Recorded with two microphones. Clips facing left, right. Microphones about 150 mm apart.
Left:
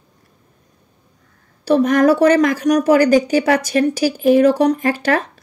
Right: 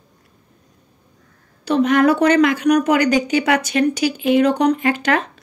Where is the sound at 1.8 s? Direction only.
40° left (ahead or behind).